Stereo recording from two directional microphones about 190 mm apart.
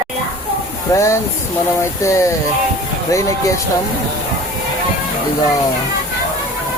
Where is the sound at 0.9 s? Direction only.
15° left (ahead or behind).